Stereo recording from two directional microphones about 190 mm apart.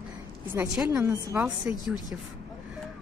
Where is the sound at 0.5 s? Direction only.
10° right (ahead or behind).